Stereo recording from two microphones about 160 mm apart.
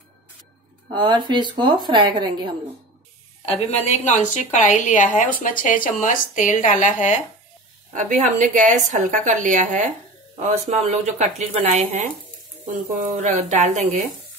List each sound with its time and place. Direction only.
0.9 s speech: 30° right (ahead or behind)
3.4 s a woman's voice: 40° left (ahead or behind)
7.9 s speech: 50° right (ahead or behind)
13.0 s speech: 45° right (ahead or behind)